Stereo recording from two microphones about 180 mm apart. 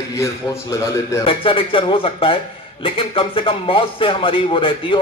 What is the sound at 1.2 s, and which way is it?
A man's voice, 30° left (ahead or behind).